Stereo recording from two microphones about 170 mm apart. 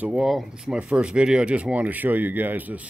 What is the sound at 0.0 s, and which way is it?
Speech, 5° right (ahead or behind).